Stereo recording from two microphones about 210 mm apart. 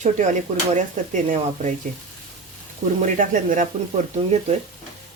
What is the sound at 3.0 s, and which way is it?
Speech, 35° right (ahead or behind).